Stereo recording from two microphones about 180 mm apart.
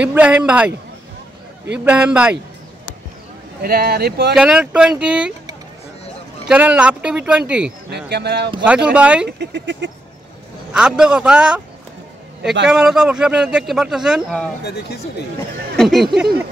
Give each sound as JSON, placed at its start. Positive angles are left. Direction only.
{"t": 0.0, "sound": "speech", "side_deg": -10}
{"t": 1.9, "sound": "speech", "side_deg": -5}
{"t": 3.6, "sound": "speech", "side_deg": -60}
{"t": 4.4, "sound": "speech", "side_deg": -5}
{"t": 6.4, "sound": "speech", "side_deg": -5}
{"t": 8.1, "sound": "speech", "side_deg": -65}
{"t": 8.6, "sound": "speech", "side_deg": -5}
{"t": 9.4, "sound": "speech", "side_deg": -85}
{"t": 10.7, "sound": "speech", "side_deg": -5}
{"t": 12.6, "sound": "speech", "side_deg": -5}
{"t": 14.6, "sound": "speech", "side_deg": 65}
{"t": 15.7, "sound": "speech", "side_deg": 0}